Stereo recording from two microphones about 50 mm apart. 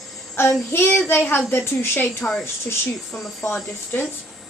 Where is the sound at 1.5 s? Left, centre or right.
Left.